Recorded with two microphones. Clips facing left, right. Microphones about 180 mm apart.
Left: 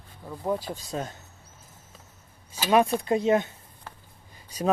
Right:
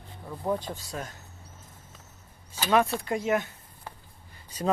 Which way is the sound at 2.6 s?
10° left (ahead or behind).